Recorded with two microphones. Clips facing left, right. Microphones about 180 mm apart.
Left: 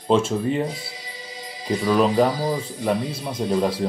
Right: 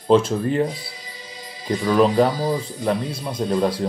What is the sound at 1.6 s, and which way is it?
Speech, 5° left (ahead or behind).